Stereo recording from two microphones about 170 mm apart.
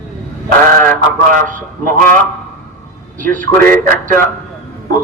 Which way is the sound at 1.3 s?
50° right (ahead or behind).